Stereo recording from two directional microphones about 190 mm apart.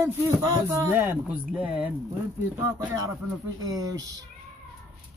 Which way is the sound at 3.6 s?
20° right (ahead or behind).